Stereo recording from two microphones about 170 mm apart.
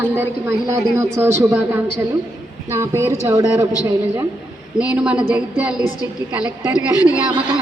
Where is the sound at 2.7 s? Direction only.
15° right (ahead or behind).